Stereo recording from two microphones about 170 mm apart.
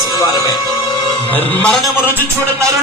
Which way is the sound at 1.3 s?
5° left (ahead or behind).